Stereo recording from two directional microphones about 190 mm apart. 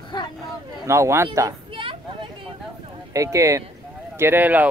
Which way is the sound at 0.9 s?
15° right (ahead or behind).